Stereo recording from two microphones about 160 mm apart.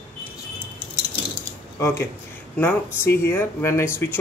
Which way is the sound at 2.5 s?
15° left (ahead or behind).